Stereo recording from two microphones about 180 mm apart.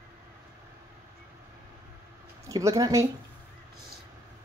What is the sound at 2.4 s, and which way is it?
Speech, 20° right (ahead or behind).